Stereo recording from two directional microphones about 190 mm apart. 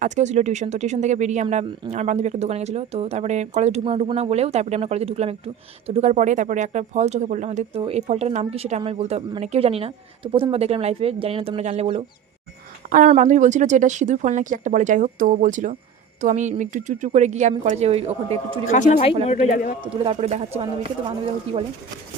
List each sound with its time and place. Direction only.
0.0 s speech: 40° right (ahead or behind)
18.7 s speech: 40° left (ahead or behind)
19.8 s speech: 30° right (ahead or behind)